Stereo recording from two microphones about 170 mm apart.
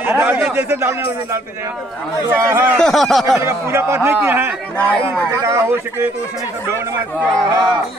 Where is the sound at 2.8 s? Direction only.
Centre (ahead or behind).